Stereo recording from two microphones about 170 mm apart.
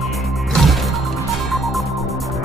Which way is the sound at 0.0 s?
Centre (ahead or behind).